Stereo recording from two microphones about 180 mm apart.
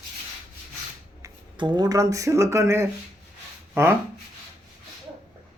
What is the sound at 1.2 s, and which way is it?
Speech, 25° right (ahead or behind).